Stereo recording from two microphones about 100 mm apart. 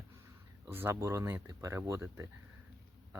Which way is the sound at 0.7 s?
20° right (ahead or behind).